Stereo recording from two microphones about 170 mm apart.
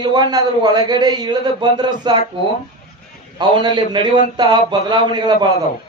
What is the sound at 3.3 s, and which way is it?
A man's voice, 25° right (ahead or behind).